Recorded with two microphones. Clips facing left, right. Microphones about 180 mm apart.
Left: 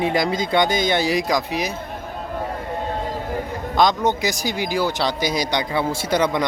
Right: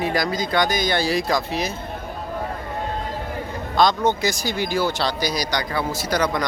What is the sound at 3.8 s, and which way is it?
Speech, 15° left (ahead or behind).